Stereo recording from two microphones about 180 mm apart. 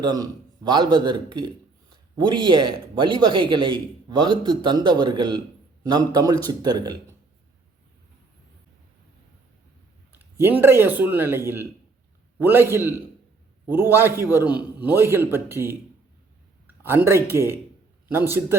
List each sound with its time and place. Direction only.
0.0 s a man's voice: 20° right (ahead or behind)
10.1 s a man's voice: 10° right (ahead or behind)